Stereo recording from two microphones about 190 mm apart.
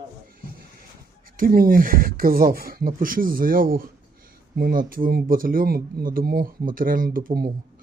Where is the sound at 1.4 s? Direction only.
50° right (ahead or behind).